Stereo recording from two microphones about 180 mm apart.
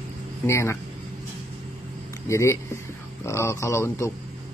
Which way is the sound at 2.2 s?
15° left (ahead or behind).